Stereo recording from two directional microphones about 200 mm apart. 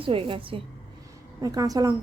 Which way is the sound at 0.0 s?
25° right (ahead or behind).